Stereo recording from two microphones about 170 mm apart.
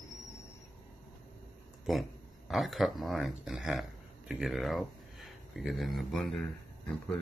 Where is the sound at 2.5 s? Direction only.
Centre (ahead or behind).